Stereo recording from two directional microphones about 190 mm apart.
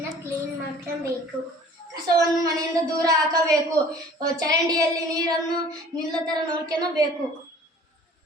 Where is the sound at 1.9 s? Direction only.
20° right (ahead or behind).